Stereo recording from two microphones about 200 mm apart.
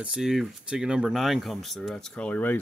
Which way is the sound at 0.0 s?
5° right (ahead or behind).